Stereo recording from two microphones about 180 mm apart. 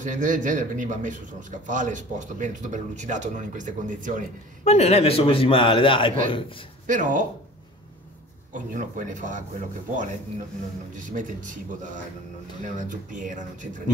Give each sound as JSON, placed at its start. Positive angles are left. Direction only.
{"t": 0.0, "sound": "a man's voice", "side_deg": -45}
{"t": 4.6, "sound": "a man's voice", "side_deg": 35}
{"t": 6.9, "sound": "a man's voice", "side_deg": -45}
{"t": 8.5, "sound": "a man's voice", "side_deg": -45}